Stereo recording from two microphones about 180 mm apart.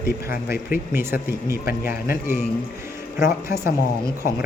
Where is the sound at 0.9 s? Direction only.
15° right (ahead or behind).